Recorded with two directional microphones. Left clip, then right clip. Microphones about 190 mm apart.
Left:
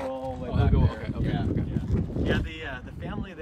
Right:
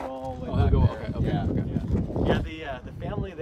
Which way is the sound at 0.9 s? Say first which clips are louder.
Right 2 dB; 45° right (ahead or behind).